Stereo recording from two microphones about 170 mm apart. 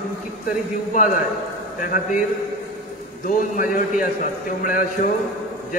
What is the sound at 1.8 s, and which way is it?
Speech, 50° left (ahead or behind).